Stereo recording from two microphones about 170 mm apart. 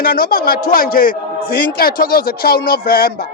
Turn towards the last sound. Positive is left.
turn(degrees=60)  # may be behind; listen again after turning